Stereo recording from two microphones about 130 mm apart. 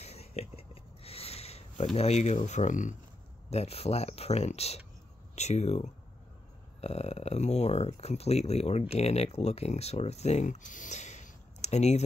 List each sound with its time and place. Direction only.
0.0 s writing: 55° left (ahead or behind)
2.0 s speech: 55° left (ahead or behind); by 3.0 s 75° left (ahead or behind)
3.4 s speech: 55° left (ahead or behind)